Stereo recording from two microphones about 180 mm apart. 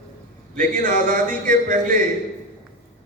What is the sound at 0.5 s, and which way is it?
A man's voice, 50° right (ahead or behind).